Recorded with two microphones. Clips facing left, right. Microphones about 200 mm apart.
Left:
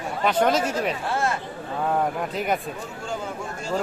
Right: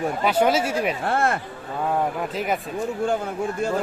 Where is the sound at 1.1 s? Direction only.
55° right (ahead or behind).